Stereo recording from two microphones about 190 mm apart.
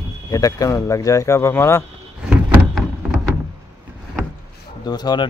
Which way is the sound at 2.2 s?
5° right (ahead or behind).